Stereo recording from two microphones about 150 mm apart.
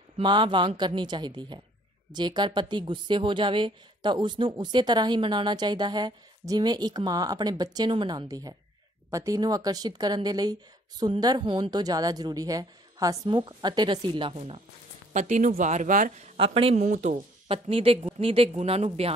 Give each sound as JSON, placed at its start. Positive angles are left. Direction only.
{"t": 0.2, "sound": "speech", "side_deg": -35}
{"t": 15.1, "sound": "speech", "side_deg": -55}
{"t": 16.3, "sound": "speech", "side_deg": -40}
{"t": 16.8, "sound": "speech", "side_deg": -55}